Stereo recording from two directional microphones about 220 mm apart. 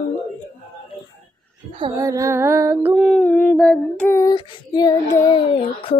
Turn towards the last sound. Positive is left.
turn(degrees=25)  # may be behind; listen again after turning